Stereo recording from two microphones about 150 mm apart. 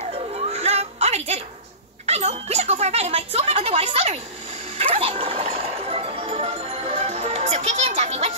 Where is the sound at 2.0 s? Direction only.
45° right (ahead or behind).